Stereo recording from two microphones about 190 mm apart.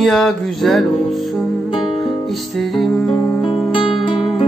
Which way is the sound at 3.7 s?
25° left (ahead or behind).